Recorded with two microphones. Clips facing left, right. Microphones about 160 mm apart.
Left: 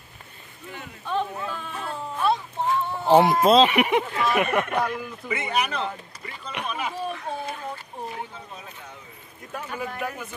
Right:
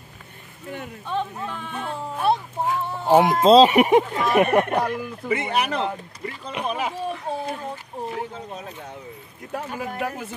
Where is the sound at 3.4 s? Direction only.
35° right (ahead or behind).